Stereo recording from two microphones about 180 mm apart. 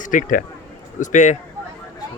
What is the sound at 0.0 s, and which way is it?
Speech, 45° left (ahead or behind).